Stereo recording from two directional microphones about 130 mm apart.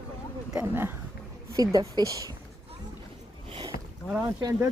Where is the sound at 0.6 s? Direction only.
15° right (ahead or behind).